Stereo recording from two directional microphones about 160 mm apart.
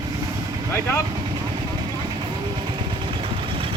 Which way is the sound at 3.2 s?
35° right (ahead or behind).